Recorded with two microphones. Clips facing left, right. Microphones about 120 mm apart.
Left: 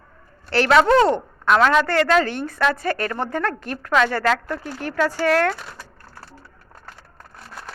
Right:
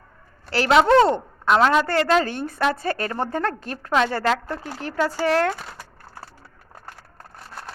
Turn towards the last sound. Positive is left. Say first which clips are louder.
# left 1 dB
turn(degrees=-25)  # may be behind; listen again after turning